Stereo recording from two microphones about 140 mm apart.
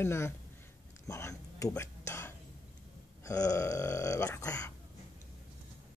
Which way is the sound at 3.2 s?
20° left (ahead or behind).